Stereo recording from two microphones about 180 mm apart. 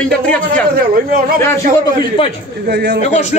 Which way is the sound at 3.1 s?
40° left (ahead or behind).